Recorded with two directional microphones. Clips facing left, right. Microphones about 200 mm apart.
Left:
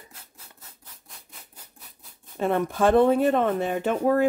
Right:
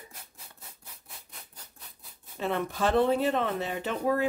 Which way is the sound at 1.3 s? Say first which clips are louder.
Left 1 dB; centre (ahead or behind).